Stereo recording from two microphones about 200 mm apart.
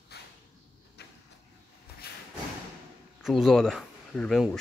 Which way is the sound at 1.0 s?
55° left (ahead or behind).